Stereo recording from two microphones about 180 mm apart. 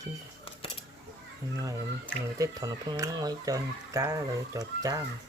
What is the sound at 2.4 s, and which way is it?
Speech, 20° right (ahead or behind).